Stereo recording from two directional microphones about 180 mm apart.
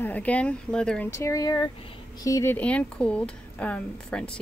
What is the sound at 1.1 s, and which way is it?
Speech, 15° left (ahead or behind).